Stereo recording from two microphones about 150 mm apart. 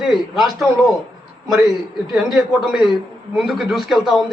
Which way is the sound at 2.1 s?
5° right (ahead or behind).